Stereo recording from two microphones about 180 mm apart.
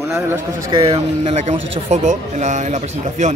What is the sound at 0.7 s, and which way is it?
Speech, 30° right (ahead or behind).